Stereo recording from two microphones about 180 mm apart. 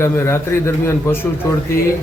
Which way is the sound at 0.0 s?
15° left (ahead or behind).